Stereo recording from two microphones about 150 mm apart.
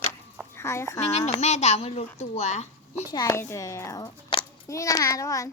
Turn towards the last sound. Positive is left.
turn(degrees=20)  # may be behind; listen again after turning